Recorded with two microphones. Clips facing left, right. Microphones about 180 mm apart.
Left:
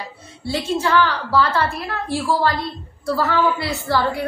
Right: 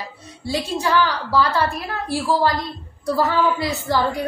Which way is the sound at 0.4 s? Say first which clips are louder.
Left 2 dB; 15° right (ahead or behind).